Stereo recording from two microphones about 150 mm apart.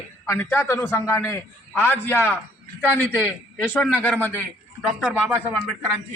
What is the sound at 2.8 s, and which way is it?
A man's voice, 10° right (ahead or behind).